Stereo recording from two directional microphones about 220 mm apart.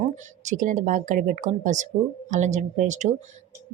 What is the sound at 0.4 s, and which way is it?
A woman's voice, 35° right (ahead or behind).